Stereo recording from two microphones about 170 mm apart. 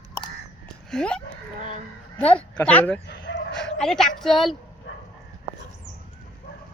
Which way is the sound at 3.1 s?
85° left.